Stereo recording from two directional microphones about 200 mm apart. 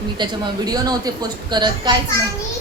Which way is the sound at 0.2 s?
20° right (ahead or behind).